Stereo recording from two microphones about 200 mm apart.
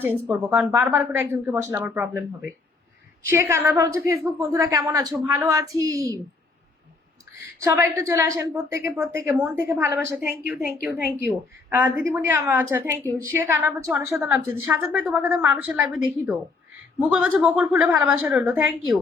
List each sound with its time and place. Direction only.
0.0 s a woman's voice: 10° right (ahead or behind)
3.2 s a woman's voice: 10° right (ahead or behind)
7.6 s a woman's voice: 15° right (ahead or behind)
11.7 s a woman's voice: 10° right (ahead or behind)
17.0 s a woman's voice: 5° right (ahead or behind)